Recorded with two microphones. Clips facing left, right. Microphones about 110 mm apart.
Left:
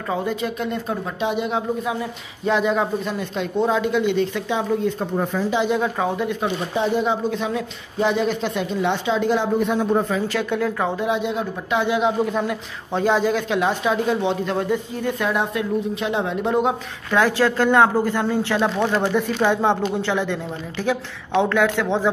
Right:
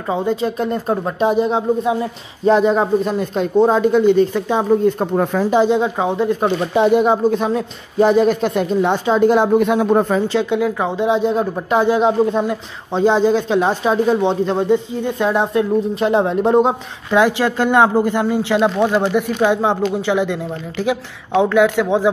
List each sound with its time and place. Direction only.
0.1 s speech: 25° right (ahead or behind); by 5.1 s 45° right (ahead or behind)
5.1 s speech: 65° right (ahead or behind)
5.7 s speech: 20° right (ahead or behind)
6.4 s speech: 60° right (ahead or behind)
9.7 s speech: 65° right (ahead or behind)
10.2 s speech: 20° right (ahead or behind)
11.1 s speech: 35° right (ahead or behind)
12.4 s speech: 25° right (ahead or behind)
15.9 s speech: 40° right (ahead or behind)
17.1 s speech: 15° right (ahead or behind)